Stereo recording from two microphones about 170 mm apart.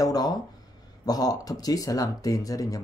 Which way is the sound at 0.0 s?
25° left (ahead or behind).